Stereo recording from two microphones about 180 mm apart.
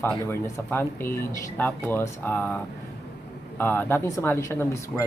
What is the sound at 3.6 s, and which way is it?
Speech, 10° left (ahead or behind).